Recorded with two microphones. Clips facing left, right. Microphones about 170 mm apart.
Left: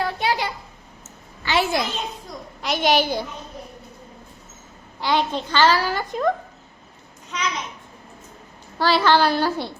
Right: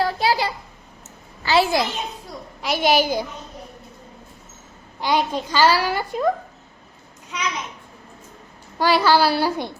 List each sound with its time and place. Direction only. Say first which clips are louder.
0.0 s a sound: right 3 dB; 35° right (ahead or behind)
1.5 s a woman's voice: right 3 dB; 30° right (ahead or behind)
2.6 s a child's voice: right 1 dB; 5° right (ahead or behind)
4.9 s a child's voice: right 1 dB; 15° right (ahead or behind)
7.3 s a sound: even; 10° right (ahead or behind)
8.8 s a child's voice: right 1 dB; 10° right (ahead or behind)